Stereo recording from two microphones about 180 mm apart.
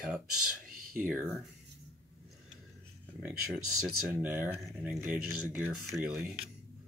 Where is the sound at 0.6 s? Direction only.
55° right (ahead or behind).